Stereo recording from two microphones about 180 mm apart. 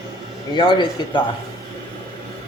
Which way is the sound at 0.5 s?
25° left (ahead or behind).